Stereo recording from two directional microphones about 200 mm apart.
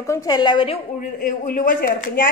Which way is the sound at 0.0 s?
15° left (ahead or behind).